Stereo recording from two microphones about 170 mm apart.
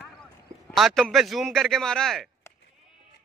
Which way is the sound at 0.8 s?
Centre (ahead or behind).